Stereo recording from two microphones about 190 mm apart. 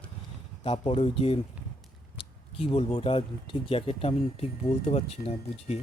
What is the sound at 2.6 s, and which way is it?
Speech, 30° left (ahead or behind).